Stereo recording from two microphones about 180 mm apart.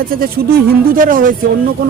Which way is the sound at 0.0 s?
55° right (ahead or behind).